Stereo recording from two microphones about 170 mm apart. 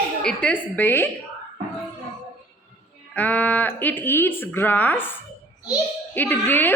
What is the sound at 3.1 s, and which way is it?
A woman's voice, 10° left (ahead or behind).